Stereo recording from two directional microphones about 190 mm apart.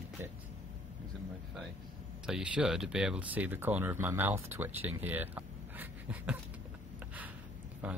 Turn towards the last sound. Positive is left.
turn(degrees=-10)  # may be behind; listen again after turning